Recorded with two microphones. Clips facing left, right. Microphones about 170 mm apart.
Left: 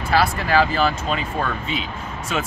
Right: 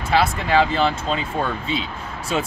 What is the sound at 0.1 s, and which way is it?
Speech, 20° right (ahead or behind).